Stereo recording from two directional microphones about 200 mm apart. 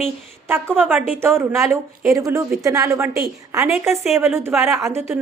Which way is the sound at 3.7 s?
Centre (ahead or behind).